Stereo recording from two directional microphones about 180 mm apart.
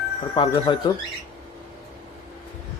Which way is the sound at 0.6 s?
25° left (ahead or behind).